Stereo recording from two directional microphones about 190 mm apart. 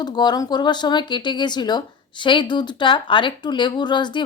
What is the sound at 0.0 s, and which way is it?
Speech, 20° left (ahead or behind).